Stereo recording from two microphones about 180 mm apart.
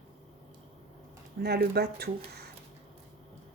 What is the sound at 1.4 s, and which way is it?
A woman's voice, 60° right (ahead or behind).